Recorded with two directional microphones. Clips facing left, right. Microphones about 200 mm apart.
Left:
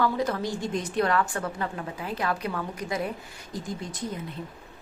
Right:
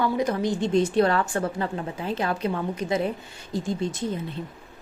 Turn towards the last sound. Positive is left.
turn(degrees=-25)  # may be behind; listen again after turning